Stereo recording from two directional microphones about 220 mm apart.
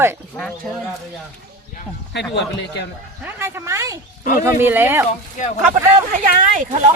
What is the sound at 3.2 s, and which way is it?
Speech, 10° right (ahead or behind).